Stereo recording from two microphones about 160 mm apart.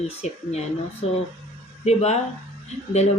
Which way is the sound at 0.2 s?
45° left (ahead or behind).